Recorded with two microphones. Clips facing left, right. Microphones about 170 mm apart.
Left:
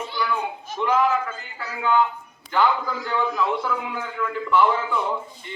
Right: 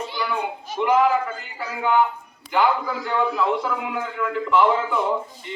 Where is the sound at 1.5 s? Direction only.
15° right (ahead or behind).